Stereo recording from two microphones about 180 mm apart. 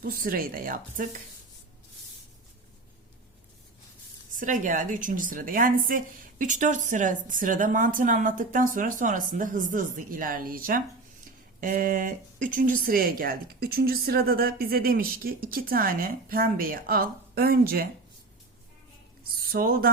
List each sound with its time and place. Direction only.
0.0 s speech: 50° right (ahead or behind)
4.3 s speech: 45° right (ahead or behind)
19.5 s speech: 55° right (ahead or behind)